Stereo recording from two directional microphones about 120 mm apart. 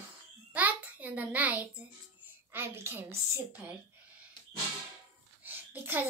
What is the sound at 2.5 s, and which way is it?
A woman's voice, 20° right (ahead or behind).